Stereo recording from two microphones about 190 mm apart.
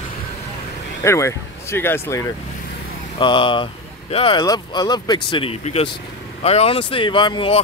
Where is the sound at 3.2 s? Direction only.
25° left (ahead or behind).